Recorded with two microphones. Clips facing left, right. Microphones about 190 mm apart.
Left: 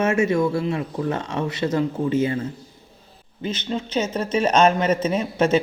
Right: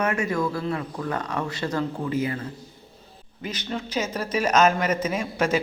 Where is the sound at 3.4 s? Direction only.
25° left (ahead or behind).